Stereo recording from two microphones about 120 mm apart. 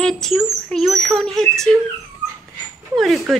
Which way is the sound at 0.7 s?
5° left (ahead or behind).